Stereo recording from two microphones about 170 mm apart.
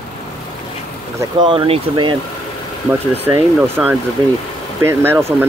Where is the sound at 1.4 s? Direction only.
30° right (ahead or behind).